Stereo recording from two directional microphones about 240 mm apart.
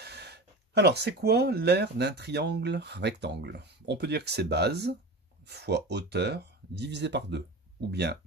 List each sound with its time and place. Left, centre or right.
0.0 s speech: right